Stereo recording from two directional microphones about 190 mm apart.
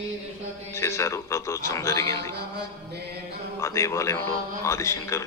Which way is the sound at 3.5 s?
15° left (ahead or behind).